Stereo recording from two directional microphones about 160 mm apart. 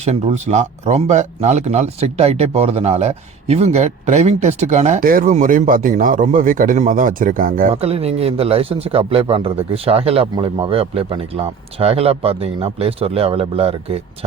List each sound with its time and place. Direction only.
0.0 s a man's voice: 40° right (ahead or behind); by 7.7 s 60° right (ahead or behind)
7.7 s a man's voice: 40° right (ahead or behind)